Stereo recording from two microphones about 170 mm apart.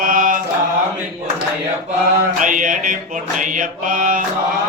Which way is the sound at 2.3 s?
50° right (ahead or behind).